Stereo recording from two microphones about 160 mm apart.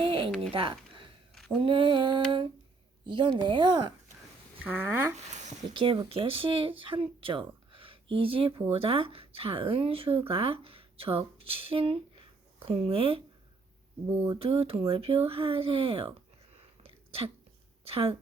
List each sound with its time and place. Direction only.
0.0 s a sound: 35° right (ahead or behind)
1.6 s speech: 35° right (ahead or behind)
4.6 s speech: 10° right (ahead or behind)
5.1 s speech: 45° right (ahead or behind)
5.7 s speech: 30° right (ahead or behind)
14.4 s speech: 35° right (ahead or behind)
16.8 s sneeze: 35° right (ahead or behind)
17.8 s speech: 35° right (ahead or behind)